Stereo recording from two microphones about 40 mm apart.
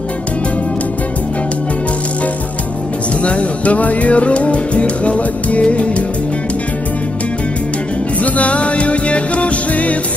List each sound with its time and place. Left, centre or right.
3.2 s music: left
8.2 s music: left